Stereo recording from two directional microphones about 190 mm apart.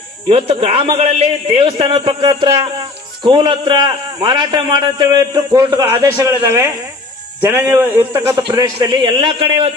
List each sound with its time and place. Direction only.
0.3 s a man's voice: 30° right (ahead or behind)